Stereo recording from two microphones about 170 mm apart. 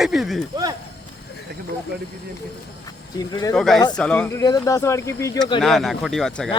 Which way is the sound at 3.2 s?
20° left (ahead or behind).